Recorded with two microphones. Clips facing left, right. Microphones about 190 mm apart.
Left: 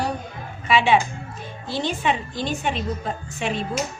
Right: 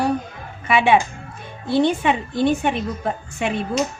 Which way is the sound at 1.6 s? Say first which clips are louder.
Right 6 dB; 55° right (ahead or behind).